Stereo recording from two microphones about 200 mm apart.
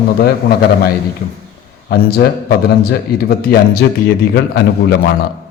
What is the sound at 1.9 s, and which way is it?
A man's voice, 50° left (ahead or behind).